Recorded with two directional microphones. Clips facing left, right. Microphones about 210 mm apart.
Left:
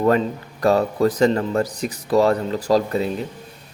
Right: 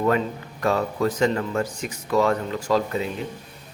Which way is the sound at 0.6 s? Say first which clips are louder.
Left 5 dB; 35° left (ahead or behind).